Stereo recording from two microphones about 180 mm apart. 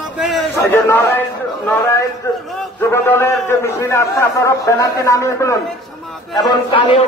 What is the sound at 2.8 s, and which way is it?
A man's voice, 15° left (ahead or behind).